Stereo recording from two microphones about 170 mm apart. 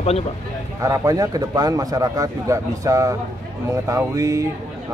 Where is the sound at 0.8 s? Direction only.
20° right (ahead or behind).